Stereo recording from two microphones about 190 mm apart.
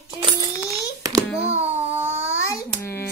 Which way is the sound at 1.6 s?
10° right (ahead or behind).